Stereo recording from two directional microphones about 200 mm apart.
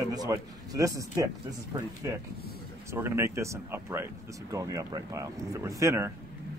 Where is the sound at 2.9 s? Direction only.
10° right (ahead or behind).